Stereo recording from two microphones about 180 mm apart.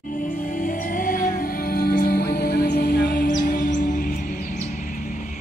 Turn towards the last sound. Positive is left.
turn(degrees=50)  # may be behind; listen again after turning